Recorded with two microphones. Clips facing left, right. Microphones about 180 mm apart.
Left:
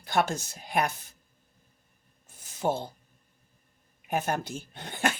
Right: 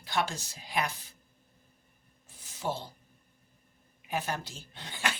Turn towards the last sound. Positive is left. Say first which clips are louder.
# left 6 dB
turn(degrees=50)  # may be behind; listen again after turning